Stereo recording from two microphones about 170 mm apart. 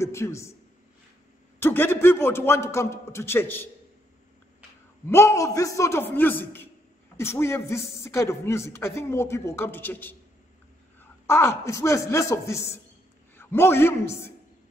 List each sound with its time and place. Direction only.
0.0 s a man's voice: 15° left (ahead or behind)
1.6 s a man's voice: 15° left (ahead or behind)
5.0 s a man's voice: 15° left (ahead or behind)